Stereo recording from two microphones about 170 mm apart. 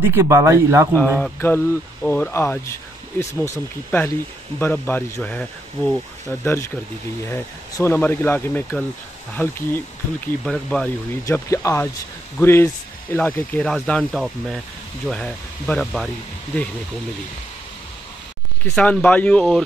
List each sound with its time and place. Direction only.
0.0 s speech: 15° right (ahead or behind)
0.9 s speech: 5° left (ahead or behind)
11.2 s speech: 20° left (ahead or behind); by 16.1 s centre (ahead or behind)
18.8 s speech: 5° left (ahead or behind)